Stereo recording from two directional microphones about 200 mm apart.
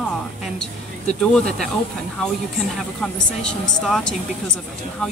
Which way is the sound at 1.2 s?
5° left (ahead or behind).